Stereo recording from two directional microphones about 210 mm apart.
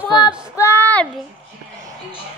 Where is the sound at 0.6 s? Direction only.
10° left (ahead or behind).